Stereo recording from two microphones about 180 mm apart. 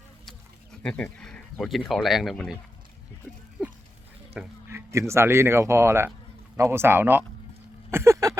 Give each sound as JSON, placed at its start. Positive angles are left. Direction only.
{"t": 0.3, "sound": "speech", "side_deg": 5}
{"t": 4.4, "sound": "speech", "side_deg": -15}
{"t": 7.9, "sound": "a sound", "side_deg": -15}